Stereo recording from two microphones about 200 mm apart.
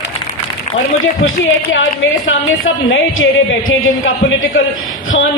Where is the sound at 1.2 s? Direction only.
80° left.